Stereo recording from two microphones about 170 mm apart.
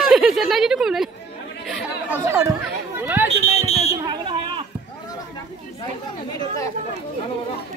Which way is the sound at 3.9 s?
25° right (ahead or behind).